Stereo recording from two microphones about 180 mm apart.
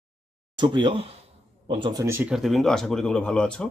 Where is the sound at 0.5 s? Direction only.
25° right (ahead or behind).